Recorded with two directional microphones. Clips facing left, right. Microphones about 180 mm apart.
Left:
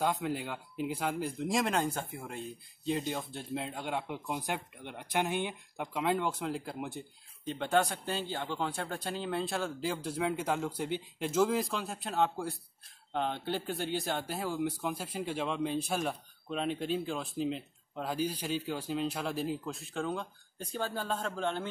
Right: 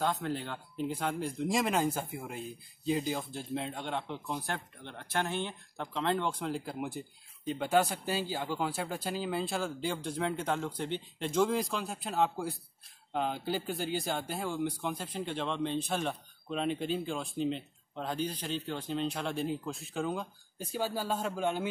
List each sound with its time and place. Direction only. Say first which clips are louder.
0.0 s speech: left 1 dB; 10° left (ahead or behind); by 21.6 s 10° right (ahead or behind)